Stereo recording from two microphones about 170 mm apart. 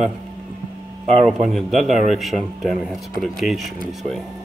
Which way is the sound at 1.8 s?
45° right (ahead or behind).